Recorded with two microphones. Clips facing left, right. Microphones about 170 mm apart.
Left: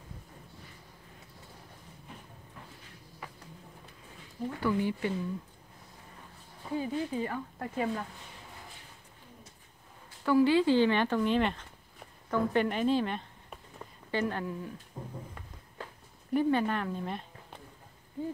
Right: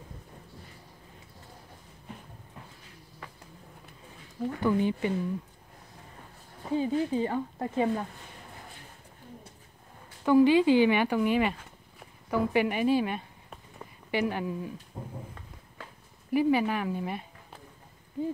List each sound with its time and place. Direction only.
4.6 s speech: 20° right (ahead or behind)
6.7 s speech: 25° right (ahead or behind)
10.2 s a woman's voice: 15° right (ahead or behind)
16.3 s speech: 10° right (ahead or behind)